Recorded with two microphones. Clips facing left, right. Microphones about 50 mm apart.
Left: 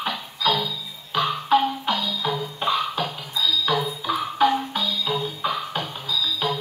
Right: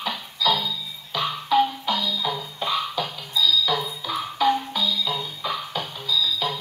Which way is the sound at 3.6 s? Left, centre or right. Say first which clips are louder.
Left 2 dB; left.